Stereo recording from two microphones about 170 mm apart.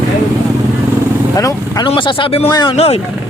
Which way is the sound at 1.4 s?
20° left (ahead or behind).